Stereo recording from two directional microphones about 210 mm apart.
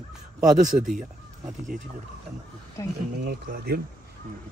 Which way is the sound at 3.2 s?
50° right (ahead or behind).